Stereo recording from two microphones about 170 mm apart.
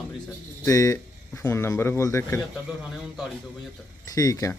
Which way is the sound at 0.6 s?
20° left (ahead or behind).